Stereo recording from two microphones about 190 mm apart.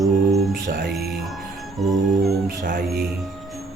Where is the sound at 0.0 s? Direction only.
Centre (ahead or behind).